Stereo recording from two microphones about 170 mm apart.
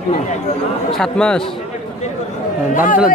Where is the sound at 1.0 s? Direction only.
5° left (ahead or behind).